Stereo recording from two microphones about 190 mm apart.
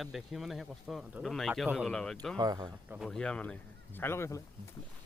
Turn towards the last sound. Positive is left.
turn(degrees=15)  # may be behind; listen again after turning